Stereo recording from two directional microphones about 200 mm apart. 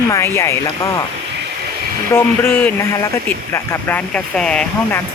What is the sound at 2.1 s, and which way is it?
Speech, 10° left (ahead or behind).